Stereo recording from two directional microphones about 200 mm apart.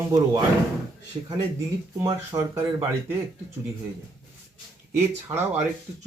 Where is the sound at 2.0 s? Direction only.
15° right (ahead or behind).